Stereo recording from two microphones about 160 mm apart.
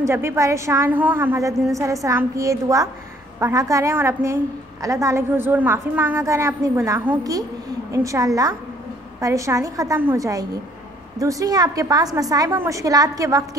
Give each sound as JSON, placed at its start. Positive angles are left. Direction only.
{"t": 0.0, "sound": "a woman's voice", "side_deg": -15}